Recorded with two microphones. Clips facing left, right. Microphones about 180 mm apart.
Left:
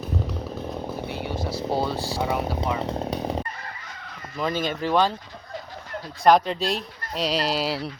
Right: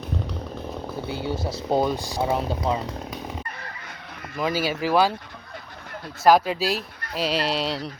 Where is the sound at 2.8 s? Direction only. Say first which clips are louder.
Left 6 dB; 30° left (ahead or behind).